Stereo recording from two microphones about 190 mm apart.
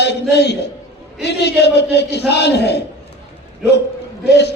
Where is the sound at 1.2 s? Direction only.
60° left (ahead or behind).